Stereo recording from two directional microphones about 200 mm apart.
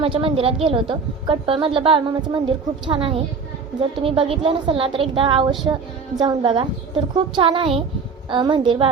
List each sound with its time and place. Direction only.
0.0 s a woman's voice: 25° right (ahead or behind)